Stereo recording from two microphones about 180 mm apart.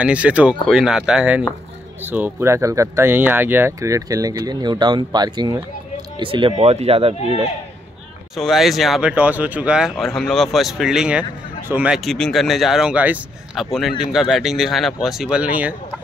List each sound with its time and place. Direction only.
0.0 s speech: 5° right (ahead or behind); by 7.2 s 30° right (ahead or behind)
8.4 s speech: centre (ahead or behind)